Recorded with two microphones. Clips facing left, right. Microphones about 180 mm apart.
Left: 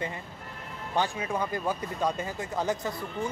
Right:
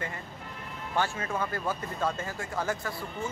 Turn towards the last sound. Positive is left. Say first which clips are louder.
# left 3 dB
turn(degrees=20)  # may be behind; listen again after turning